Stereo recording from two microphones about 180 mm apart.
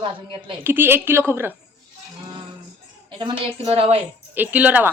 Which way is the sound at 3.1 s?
30° right (ahead or behind).